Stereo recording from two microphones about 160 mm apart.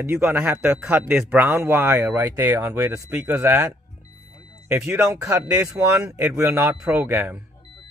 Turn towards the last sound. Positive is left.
turn(degrees=-15)  # may be behind; listen again after turning